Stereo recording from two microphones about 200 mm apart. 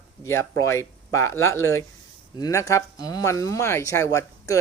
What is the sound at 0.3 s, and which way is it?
Speech, 15° left (ahead or behind).